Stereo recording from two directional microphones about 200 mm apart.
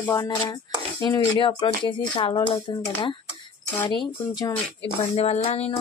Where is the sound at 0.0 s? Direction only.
15° left (ahead or behind).